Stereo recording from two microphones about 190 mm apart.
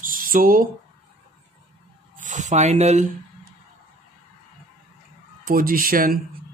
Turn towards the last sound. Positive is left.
turn(degrees=-50)  # may be behind; listen again after turning